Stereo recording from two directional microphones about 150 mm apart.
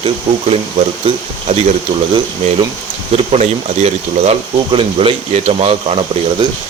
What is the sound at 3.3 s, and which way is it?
Speech, 45° right (ahead or behind).